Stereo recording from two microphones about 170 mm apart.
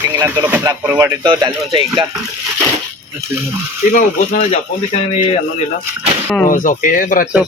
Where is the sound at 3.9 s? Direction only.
55° left (ahead or behind).